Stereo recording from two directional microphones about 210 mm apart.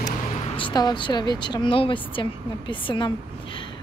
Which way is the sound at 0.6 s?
20° left (ahead or behind).